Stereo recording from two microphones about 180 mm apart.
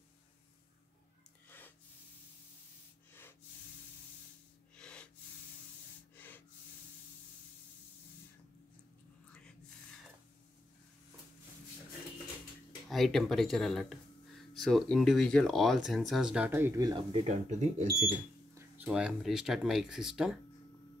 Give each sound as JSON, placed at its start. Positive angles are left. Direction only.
{"t": 3.1, "sound": "snort", "side_deg": 10}
{"t": 4.7, "sound": "snort", "side_deg": 5}
{"t": 6.1, "sound": "gasp", "side_deg": 10}
{"t": 12.8, "sound": "speech", "side_deg": 0}
{"t": 17.3, "sound": "speech", "side_deg": -40}
{"t": 18.5, "sound": "speech", "side_deg": -5}